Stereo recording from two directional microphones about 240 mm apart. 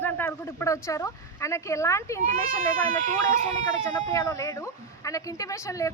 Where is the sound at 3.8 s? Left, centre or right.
Centre.